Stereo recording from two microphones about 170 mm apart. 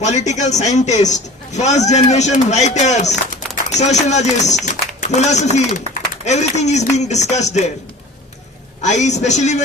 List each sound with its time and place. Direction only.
0.0 s a man's voice: 45° left (ahead or behind)
8.8 s a man's voice: 45° left (ahead or behind)